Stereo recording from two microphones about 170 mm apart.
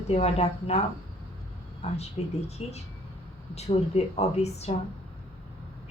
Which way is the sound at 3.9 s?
40° left (ahead or behind).